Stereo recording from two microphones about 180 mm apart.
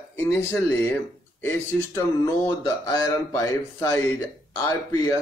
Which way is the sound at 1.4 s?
15° left (ahead or behind).